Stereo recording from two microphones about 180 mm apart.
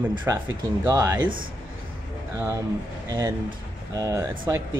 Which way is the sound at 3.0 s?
20° right (ahead or behind).